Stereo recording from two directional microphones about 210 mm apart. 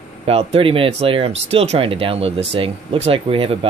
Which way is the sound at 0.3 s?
30° right (ahead or behind).